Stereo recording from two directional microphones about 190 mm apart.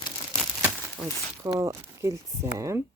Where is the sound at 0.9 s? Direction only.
10° left (ahead or behind).